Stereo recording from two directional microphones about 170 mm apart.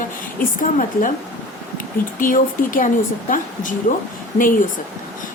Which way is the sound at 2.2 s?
55° left (ahead or behind).